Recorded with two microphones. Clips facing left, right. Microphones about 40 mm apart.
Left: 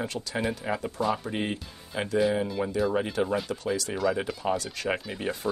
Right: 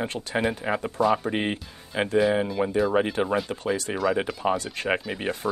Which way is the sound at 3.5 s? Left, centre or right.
Right.